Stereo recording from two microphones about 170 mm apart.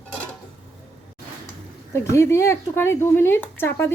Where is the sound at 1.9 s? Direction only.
15° left (ahead or behind).